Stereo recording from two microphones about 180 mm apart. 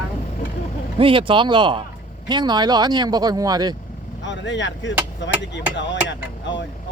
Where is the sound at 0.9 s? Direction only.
30° right (ahead or behind).